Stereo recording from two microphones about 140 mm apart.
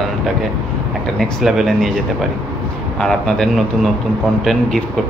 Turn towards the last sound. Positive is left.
turn(degrees=0)  # may be behind; listen again after turning